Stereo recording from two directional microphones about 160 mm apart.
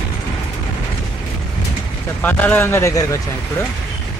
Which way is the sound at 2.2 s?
10° left (ahead or behind).